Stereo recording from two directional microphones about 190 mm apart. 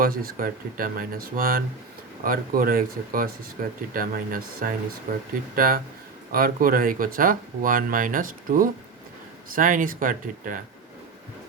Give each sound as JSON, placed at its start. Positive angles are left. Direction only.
{"t": 0.0, "sound": "speech", "side_deg": -50}